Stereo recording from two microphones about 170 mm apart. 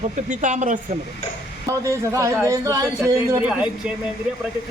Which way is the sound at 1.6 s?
20° right (ahead or behind).